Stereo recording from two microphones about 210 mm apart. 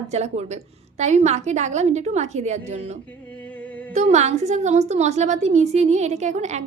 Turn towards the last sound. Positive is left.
turn(degrees=-35)  # may be behind; listen again after turning